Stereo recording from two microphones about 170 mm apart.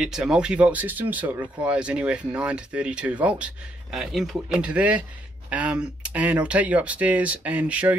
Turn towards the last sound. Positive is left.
turn(degrees=-10)  # may be behind; listen again after turning